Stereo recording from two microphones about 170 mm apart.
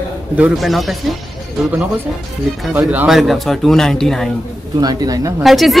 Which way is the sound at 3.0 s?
Centre (ahead or behind).